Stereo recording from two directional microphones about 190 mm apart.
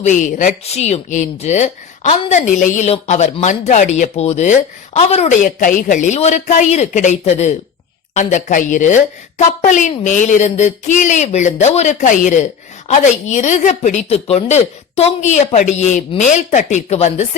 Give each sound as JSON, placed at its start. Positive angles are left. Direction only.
{"t": 0.0, "sound": "speech", "side_deg": 40}